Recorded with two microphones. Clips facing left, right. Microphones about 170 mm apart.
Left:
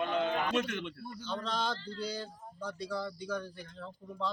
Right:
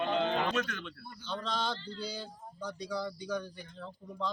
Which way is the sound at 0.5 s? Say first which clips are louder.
Left 2 dB; 25° left (ahead or behind).